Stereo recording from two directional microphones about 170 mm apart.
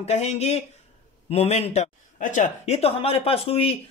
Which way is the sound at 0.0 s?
40° left (ahead or behind).